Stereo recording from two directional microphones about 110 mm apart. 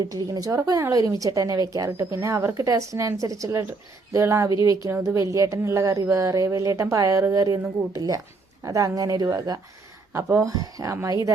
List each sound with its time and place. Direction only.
0.0 s speech: 35° right (ahead or behind)
7.6 s speech: 20° right (ahead or behind)
8.6 s speech: 30° right (ahead or behind)